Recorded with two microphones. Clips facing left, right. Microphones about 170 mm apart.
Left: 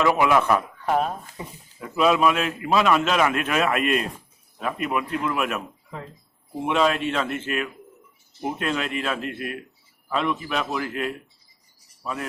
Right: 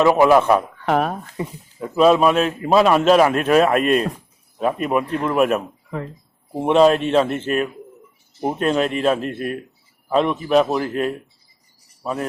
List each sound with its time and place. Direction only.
0.1 s speech: 35° right (ahead or behind)
0.9 s speech: 75° right (ahead or behind)
1.8 s a man's voice: 30° right (ahead or behind)
6.7 s a man's voice: 35° right (ahead or behind)